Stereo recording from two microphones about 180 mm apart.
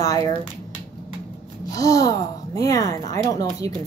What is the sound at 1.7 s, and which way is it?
Speech, 20° left (ahead or behind).